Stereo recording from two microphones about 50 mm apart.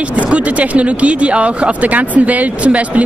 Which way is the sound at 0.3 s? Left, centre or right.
Right.